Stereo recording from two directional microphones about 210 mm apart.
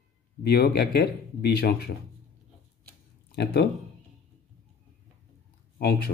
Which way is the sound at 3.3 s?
50° left (ahead or behind).